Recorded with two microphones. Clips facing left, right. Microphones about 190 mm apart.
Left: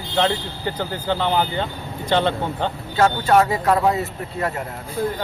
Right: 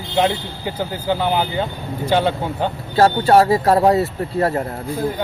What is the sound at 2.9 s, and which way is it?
Speech, 35° right (ahead or behind).